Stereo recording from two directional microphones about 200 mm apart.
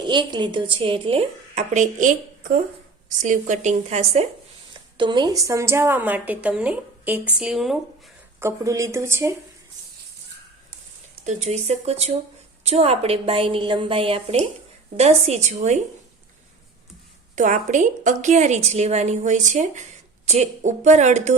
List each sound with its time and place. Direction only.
0.1 s a woman's voice: 25° right (ahead or behind)
4.9 s a woman's voice: 20° right (ahead or behind); by 7.8 s centre (ahead or behind)
8.4 s a woman's voice: 15° right (ahead or behind)
11.3 s a woman's voice: 35° right (ahead or behind)
17.3 s a woman's voice: 40° right (ahead or behind)